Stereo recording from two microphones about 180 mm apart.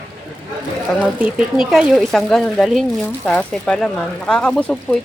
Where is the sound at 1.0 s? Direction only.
5° right (ahead or behind).